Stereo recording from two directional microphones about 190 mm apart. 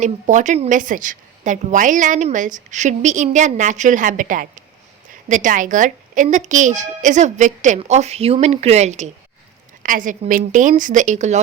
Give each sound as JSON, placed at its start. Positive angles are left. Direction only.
{"t": 0.0, "sound": "a woman's voice", "side_deg": -40}